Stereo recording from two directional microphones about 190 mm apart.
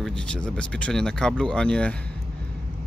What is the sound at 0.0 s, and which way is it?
Speech, 5° left (ahead or behind).